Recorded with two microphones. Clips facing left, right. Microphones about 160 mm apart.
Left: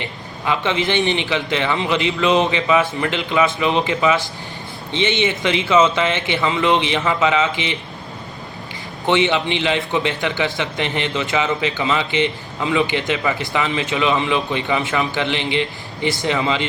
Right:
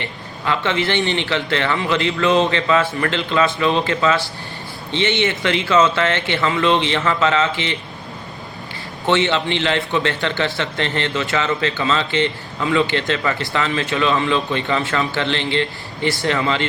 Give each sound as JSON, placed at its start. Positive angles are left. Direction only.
{"t": 0.0, "sound": "a man's voice", "side_deg": 15}
{"t": 9.0, "sound": "a man's voice", "side_deg": 15}